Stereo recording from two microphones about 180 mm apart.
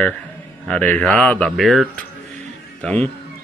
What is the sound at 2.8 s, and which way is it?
Speech, 10° left (ahead or behind).